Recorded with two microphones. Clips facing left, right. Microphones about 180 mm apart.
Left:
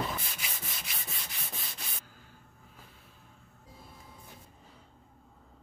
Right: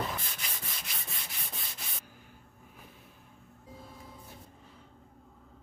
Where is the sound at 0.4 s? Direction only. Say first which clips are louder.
Left 1 dB; 5° left (ahead or behind).